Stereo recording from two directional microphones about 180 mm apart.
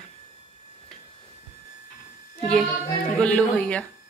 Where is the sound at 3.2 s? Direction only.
5° left (ahead or behind).